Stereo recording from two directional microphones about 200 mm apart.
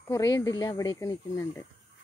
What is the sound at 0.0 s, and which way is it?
Speech, 15° left (ahead or behind).